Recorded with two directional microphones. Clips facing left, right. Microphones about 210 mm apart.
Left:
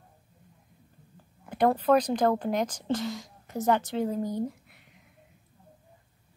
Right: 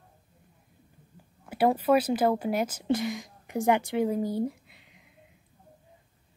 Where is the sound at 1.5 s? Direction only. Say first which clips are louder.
Even; 10° right (ahead or behind).